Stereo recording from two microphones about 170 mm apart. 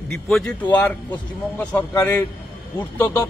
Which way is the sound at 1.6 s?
10° left (ahead or behind).